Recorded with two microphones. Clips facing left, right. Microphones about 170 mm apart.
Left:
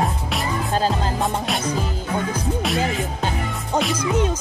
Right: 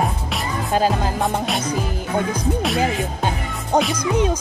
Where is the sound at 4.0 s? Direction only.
15° right (ahead or behind).